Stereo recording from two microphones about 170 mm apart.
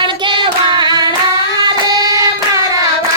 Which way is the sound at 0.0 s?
30° right (ahead or behind).